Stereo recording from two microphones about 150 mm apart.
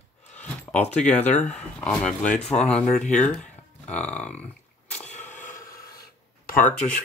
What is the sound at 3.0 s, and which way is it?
Speech, 50° left (ahead or behind).